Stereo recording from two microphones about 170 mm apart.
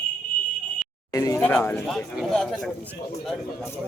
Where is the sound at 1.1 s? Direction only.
20° left (ahead or behind).